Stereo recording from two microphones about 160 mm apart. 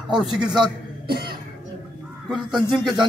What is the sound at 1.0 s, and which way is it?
Cough, 75° right (ahead or behind).